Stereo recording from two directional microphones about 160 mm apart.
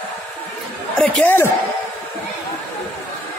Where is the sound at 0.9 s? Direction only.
5° left (ahead or behind).